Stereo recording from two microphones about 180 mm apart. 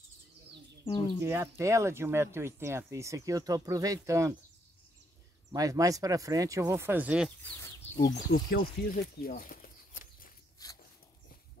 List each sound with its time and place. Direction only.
1.2 s speech: 15° right (ahead or behind)
5.5 s speech: 20° right (ahead or behind)
7.2 s speech: 10° left (ahead or behind)
8.5 s speech: 55° left (ahead or behind)
9.2 s a sound: 55° left (ahead or behind)
10.6 s dog: 20° left (ahead or behind)